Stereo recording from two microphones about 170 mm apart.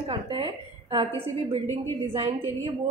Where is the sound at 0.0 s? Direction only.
30° right (ahead or behind).